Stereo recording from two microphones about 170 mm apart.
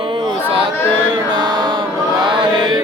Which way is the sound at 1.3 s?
25° right (ahead or behind).